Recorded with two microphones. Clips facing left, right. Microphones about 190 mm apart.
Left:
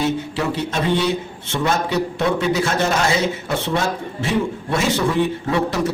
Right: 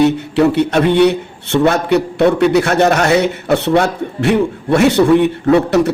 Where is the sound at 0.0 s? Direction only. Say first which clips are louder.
Right 10 dB; 65° right (ahead or behind).